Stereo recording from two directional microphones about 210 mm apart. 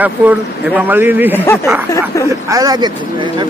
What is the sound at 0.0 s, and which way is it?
Speech, 10° right (ahead or behind).